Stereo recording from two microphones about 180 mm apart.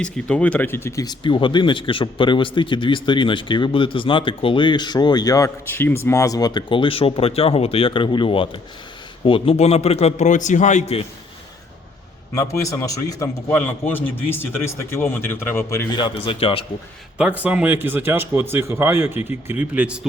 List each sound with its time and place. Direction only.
0.0 s a man's voice: 5° left (ahead or behind); by 11.0 s 40° left (ahead or behind)
12.3 s a man's voice: 15° left (ahead or behind)
17.2 s speech: 5° right (ahead or behind)